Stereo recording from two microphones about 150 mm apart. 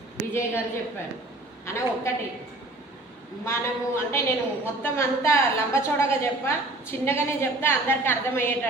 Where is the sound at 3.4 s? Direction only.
20° left (ahead or behind).